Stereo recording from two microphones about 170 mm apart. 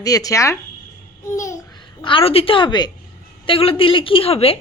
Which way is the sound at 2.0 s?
30° left (ahead or behind).